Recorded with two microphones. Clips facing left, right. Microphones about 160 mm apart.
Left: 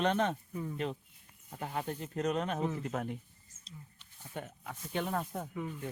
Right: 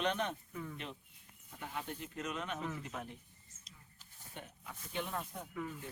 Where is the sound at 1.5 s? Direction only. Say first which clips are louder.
Left 6 dB; 45° left (ahead or behind).